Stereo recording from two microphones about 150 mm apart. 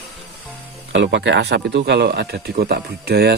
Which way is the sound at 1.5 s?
90° right.